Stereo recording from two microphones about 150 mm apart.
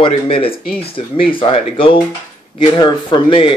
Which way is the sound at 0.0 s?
35° left (ahead or behind).